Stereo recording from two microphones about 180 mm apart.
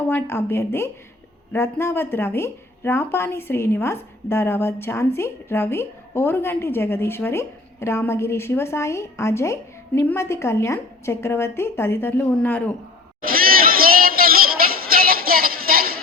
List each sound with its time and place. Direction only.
0.1 s speech: 15° left (ahead or behind)
13.8 s music: 55° right (ahead or behind)
14.8 s a sound: 55° right (ahead or behind)